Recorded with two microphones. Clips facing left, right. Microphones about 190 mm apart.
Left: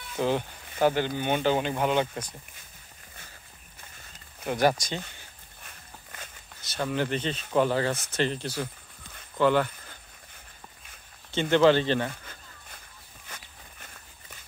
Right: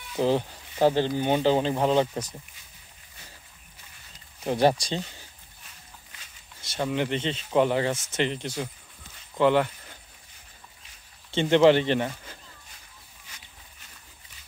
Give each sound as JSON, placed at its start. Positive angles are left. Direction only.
{"t": 0.2, "sound": "speech", "side_deg": -30}
{"t": 4.5, "sound": "speech", "side_deg": -30}
{"t": 6.6, "sound": "speech", "side_deg": -25}
{"t": 11.3, "sound": "speech", "side_deg": -25}
{"t": 13.3, "sound": "walk", "side_deg": 55}